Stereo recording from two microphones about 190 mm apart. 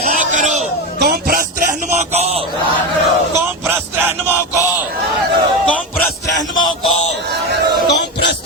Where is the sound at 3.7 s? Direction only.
10° right (ahead or behind).